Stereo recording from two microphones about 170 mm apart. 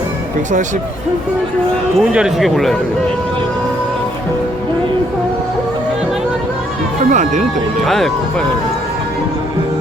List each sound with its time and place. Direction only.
2.0 s speech: centre (ahead or behind)
7.0 s speech: 45° right (ahead or behind)
7.9 s speech: centre (ahead or behind)